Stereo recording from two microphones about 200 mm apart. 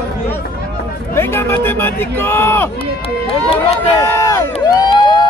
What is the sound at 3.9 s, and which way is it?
Crowd, 15° left (ahead or behind).